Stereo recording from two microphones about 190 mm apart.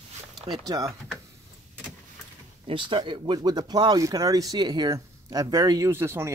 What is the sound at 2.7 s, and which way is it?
Speech, 25° right (ahead or behind).